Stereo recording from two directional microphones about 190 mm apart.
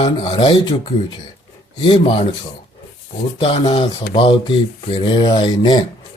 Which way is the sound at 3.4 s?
30° left (ahead or behind).